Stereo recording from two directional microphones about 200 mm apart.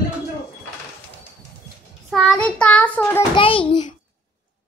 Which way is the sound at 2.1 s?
Centre (ahead or behind).